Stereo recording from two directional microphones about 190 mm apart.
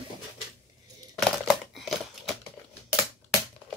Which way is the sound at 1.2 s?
Centre (ahead or behind).